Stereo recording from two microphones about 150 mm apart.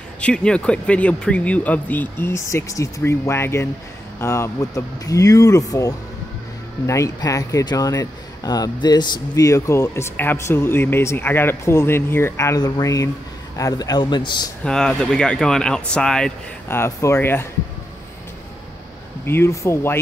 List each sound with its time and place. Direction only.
0.2 s speech: 5° left (ahead or behind); by 14.5 s 30° left (ahead or behind)
14.6 s speech: 5° left (ahead or behind)
19.2 s speech: 15° left (ahead or behind)